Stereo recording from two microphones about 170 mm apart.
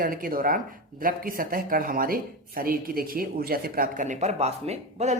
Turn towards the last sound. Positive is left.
turn(degrees=-40)  # may be behind; listen again after turning